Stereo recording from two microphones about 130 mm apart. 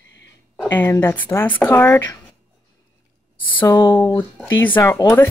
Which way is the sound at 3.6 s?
35° left (ahead or behind).